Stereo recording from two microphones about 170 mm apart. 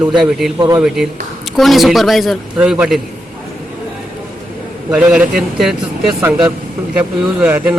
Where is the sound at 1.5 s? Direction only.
Centre (ahead or behind).